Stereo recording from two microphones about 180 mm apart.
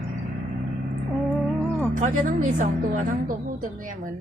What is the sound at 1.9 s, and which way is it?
Speech, 45° right (ahead or behind).